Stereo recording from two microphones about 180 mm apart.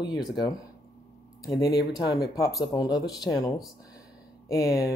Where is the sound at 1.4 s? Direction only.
20° left (ahead or behind).